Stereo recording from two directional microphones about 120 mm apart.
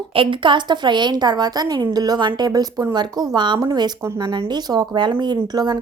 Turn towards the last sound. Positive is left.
turn(degrees=-35)  # may be behind; listen again after turning